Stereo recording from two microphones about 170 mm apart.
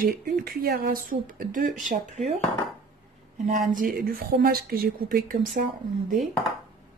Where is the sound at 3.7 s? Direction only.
55° right (ahead or behind).